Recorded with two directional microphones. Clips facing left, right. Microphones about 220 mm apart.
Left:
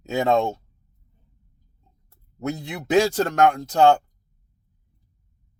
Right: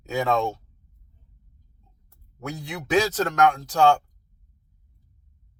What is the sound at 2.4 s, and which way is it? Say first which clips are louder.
Speech: left 5 dB; 20° left (ahead or behind).